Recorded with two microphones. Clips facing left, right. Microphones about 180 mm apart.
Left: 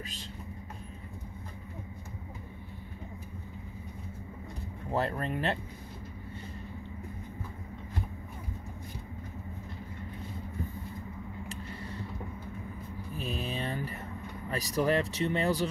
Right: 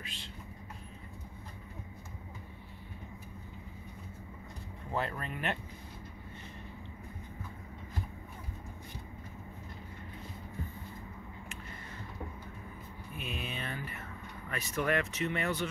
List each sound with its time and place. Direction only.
0.0 s speech: 40° left (ahead or behind)
4.9 s speech: 40° left (ahead or behind)
13.1 s a sound: 35° left (ahead or behind)
14.5 s speech: 35° left (ahead or behind)